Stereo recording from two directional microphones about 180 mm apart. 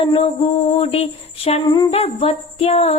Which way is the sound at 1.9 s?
35° left (ahead or behind).